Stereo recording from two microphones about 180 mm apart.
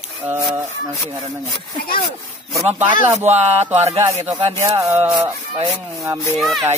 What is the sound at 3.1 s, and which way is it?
Music, 35° right (ahead or behind).